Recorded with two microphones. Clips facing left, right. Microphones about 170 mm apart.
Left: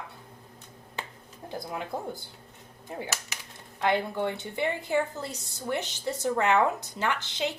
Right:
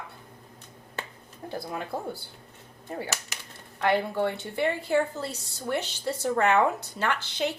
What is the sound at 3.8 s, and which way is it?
A woman's voice, 15° left (ahead or behind).